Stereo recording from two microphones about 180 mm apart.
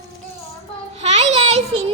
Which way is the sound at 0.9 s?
35° right (ahead or behind).